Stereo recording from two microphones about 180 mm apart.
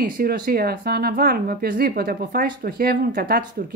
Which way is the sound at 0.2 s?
55° right (ahead or behind).